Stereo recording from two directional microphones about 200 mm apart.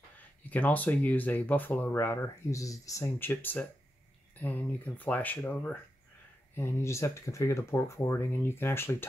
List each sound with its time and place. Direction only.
0.4 s speech: 10° left (ahead or behind)